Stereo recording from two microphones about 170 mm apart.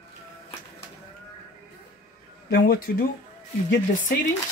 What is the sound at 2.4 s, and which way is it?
Speech, 60° left (ahead or behind).